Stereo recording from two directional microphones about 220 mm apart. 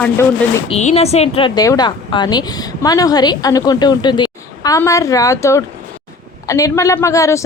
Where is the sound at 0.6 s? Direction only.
30° left (ahead or behind).